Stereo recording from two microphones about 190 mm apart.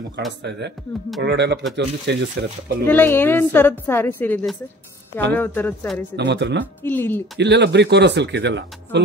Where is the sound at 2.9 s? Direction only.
10° left (ahead or behind).